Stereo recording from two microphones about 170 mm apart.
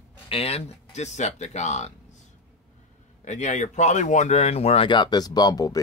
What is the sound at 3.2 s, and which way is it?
Speech, 45° left (ahead or behind).